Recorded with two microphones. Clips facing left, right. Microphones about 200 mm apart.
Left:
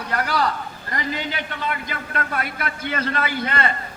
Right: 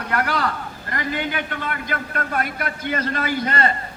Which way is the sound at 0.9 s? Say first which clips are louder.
Right 2 dB; 50° right (ahead or behind).